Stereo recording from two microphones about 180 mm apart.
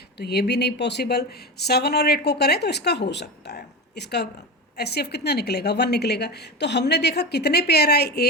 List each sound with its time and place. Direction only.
0.2 s a woman's voice: 65° left (ahead or behind)